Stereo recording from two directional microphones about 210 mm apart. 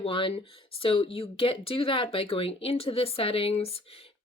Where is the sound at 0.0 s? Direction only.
25° left (ahead or behind).